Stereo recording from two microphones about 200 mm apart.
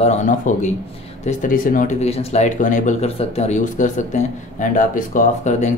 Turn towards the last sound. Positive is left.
turn(degrees=40)  # may be behind; listen again after turning